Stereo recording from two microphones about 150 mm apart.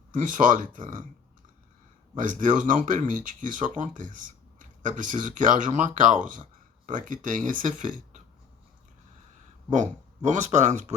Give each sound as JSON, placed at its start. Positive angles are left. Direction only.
{"t": 0.1, "sound": "speech", "side_deg": -60}
{"t": 2.1, "sound": "speech", "side_deg": -60}
{"t": 10.2, "sound": "speech", "side_deg": -50}